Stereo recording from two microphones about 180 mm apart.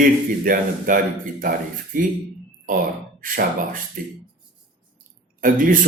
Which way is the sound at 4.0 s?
50° right (ahead or behind).